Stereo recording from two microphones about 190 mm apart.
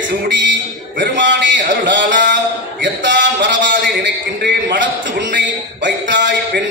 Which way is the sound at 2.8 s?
75° right (ahead or behind).